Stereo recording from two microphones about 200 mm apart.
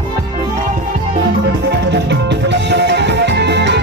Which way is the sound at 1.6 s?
60° right (ahead or behind).